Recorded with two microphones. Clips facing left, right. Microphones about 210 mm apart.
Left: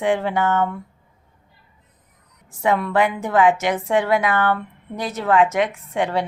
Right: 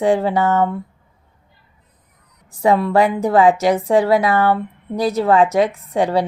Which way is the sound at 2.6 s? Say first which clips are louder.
Right 4 dB; 35° right (ahead or behind).